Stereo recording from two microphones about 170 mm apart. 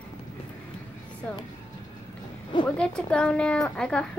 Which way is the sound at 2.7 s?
5° left (ahead or behind).